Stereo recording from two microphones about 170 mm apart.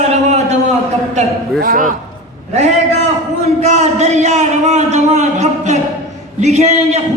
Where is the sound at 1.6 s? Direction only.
55° right (ahead or behind).